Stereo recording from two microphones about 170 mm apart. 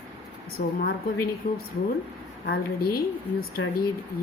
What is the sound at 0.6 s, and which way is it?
A woman's voice, 55° left (ahead or behind).